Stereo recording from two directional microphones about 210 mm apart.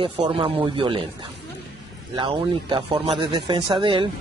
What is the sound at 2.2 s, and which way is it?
Speech, 25° right (ahead or behind).